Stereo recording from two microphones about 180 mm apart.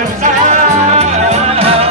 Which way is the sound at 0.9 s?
35° right (ahead or behind).